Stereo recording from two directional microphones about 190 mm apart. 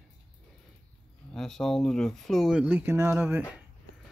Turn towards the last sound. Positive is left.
turn(degrees=-10)  # may be behind; listen again after turning